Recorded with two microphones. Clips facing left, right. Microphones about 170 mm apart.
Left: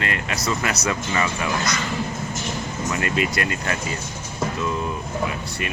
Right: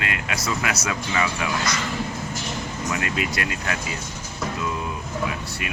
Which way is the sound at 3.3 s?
55° left (ahead or behind).